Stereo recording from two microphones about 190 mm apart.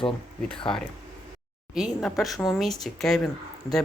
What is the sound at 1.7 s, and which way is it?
Speech, centre (ahead or behind).